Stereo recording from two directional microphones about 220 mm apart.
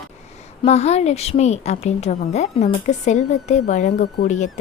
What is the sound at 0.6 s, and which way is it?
A woman's voice, 30° left (ahead or behind).